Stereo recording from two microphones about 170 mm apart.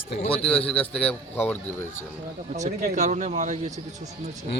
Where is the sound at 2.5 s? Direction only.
45° right (ahead or behind).